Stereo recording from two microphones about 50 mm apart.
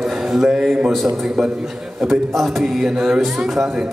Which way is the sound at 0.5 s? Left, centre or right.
Centre.